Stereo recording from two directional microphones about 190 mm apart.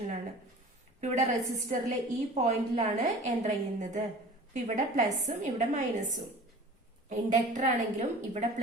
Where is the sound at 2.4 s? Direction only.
35° right (ahead or behind).